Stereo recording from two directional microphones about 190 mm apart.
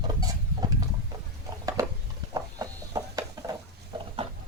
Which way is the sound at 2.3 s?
20° right (ahead or behind).